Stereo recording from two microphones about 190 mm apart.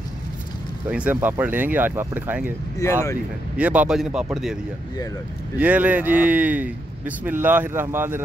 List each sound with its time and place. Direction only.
0.8 s a man's voice: 5° right (ahead or behind)
2.8 s speech: 15° left (ahead or behind)
3.5 s speech: 5° right (ahead or behind)
5.6 s a man's voice: 10° right (ahead or behind)